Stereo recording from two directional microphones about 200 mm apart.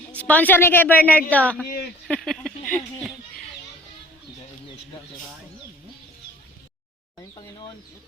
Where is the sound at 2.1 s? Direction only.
5° left (ahead or behind).